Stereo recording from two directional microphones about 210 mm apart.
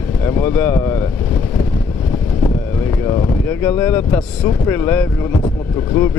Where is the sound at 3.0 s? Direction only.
15° left (ahead or behind).